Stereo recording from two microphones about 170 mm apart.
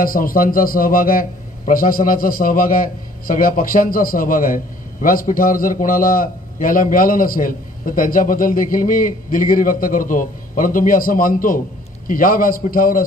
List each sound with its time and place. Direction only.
0.0 s a man's voice: 55° left (ahead or behind)